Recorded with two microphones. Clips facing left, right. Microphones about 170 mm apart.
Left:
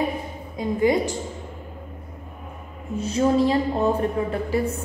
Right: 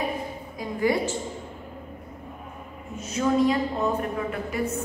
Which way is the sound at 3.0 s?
30° left (ahead or behind).